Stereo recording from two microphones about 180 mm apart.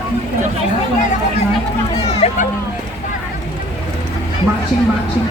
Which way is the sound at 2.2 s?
35° left (ahead or behind).